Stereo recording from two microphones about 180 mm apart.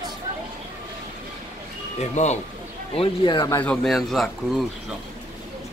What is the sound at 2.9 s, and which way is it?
Speech, 30° left (ahead or behind).